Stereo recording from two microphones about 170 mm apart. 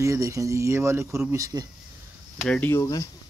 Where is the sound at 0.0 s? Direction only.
20° right (ahead or behind).